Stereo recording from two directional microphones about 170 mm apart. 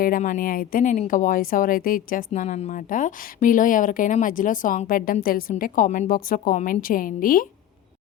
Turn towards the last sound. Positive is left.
turn(degrees=55)  # may be behind; listen again after turning